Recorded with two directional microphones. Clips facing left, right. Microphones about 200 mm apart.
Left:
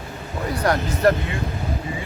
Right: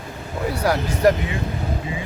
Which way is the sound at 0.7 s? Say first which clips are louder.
Right 1 dB; 5° right (ahead or behind).